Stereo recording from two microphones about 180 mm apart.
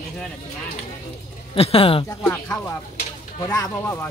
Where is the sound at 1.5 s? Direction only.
30° left (ahead or behind).